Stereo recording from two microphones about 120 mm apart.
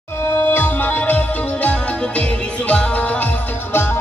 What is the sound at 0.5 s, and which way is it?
Music, 15° left (ahead or behind).